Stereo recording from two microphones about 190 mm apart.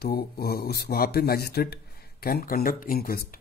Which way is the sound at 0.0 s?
55° left (ahead or behind).